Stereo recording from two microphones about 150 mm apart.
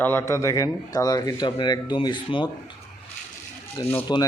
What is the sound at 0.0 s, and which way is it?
Speech, 15° left (ahead or behind).